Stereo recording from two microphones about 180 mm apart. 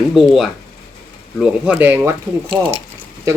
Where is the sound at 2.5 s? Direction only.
30° right (ahead or behind).